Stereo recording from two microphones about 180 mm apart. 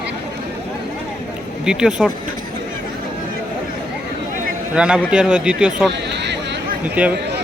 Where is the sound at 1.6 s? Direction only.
5° right (ahead or behind).